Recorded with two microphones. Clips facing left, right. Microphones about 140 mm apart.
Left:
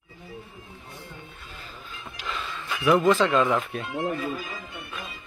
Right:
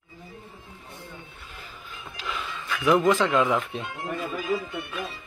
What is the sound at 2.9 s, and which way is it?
Speech, 15° right (ahead or behind).